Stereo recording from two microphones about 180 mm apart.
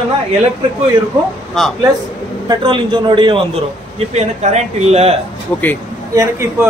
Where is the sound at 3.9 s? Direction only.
40° right (ahead or behind).